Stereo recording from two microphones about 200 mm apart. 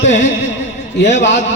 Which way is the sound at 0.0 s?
65° left (ahead or behind).